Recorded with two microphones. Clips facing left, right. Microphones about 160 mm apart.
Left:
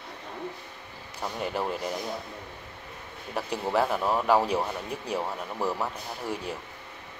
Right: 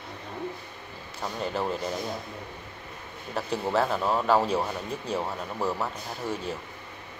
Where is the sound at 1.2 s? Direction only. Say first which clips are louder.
Even; 15° left (ahead or behind).